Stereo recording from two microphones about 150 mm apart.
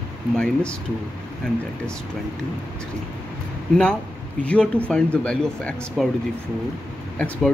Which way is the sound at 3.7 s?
5° left (ahead or behind).